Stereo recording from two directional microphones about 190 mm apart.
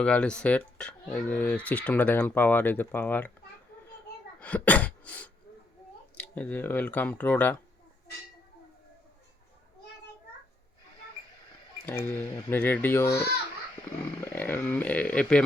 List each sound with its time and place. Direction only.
0.0 s speech: 5° left (ahead or behind)
4.4 s sneeze: 10° left (ahead or behind)
6.1 s speech: 10° left (ahead or behind)
11.9 s speech: 10° left (ahead or behind)